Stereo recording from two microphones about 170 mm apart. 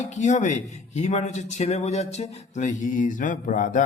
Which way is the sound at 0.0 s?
45° left (ahead or behind).